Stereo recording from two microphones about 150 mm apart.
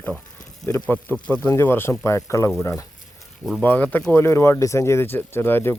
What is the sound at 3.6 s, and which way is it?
Speech, 10° left (ahead or behind).